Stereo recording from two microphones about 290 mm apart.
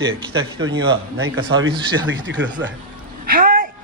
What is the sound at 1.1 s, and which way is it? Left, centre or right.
A man's voice, right.